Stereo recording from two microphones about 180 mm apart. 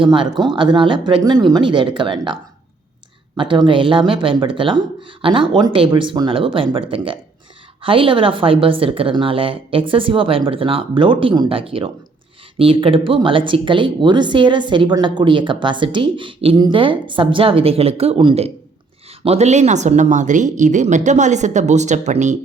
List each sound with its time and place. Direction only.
0.0 s speech: 25° right (ahead or behind)